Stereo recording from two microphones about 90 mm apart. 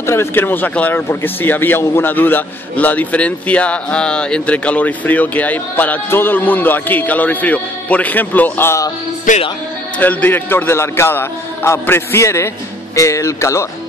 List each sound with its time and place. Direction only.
0.0 s speech: 30° left (ahead or behind)
9.9 s speech: 20° left (ahead or behind)